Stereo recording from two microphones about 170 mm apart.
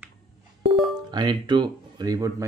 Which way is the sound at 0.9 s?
25° right (ahead or behind).